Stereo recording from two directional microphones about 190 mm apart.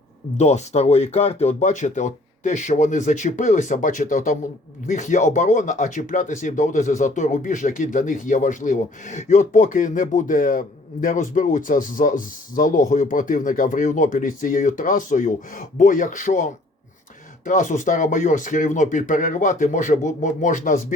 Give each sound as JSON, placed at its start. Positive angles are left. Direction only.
{"t": 0.3, "sound": "speech", "side_deg": 35}